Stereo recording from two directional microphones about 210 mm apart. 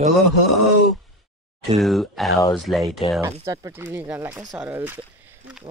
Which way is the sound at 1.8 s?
Centre (ahead or behind).